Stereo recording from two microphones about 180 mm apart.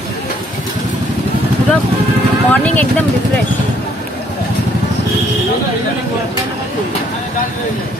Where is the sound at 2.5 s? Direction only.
10° left (ahead or behind).